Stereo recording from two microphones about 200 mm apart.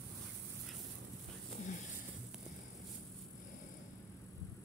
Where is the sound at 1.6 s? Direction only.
35° left (ahead or behind).